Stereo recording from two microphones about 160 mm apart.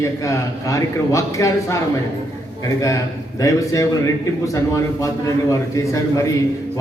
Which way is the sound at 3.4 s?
20° left (ahead or behind).